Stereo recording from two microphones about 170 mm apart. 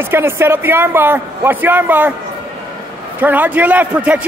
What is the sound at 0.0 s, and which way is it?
A man's voice, 15° right (ahead or behind).